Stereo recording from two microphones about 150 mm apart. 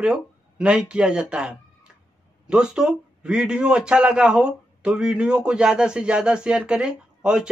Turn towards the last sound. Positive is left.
turn(degrees=-5)  # may be behind; listen again after turning